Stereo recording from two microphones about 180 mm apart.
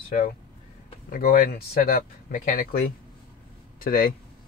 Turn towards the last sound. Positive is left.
turn(degrees=50)  # may be behind; listen again after turning